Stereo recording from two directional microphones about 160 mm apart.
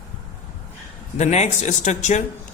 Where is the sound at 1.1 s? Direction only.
45° left (ahead or behind).